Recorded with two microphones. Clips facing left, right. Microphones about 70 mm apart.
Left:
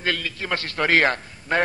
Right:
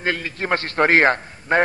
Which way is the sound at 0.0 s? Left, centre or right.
Right.